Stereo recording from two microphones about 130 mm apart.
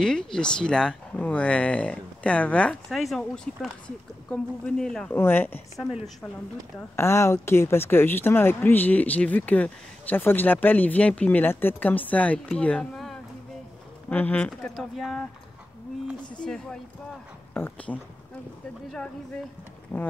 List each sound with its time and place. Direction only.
0.0 s speech: 5° left (ahead or behind)
5.1 s speech: 15° left (ahead or behind)
7.0 s speech: 20° left (ahead or behind); by 15.2 s centre (ahead or behind)
16.3 s speech: 5° left (ahead or behind)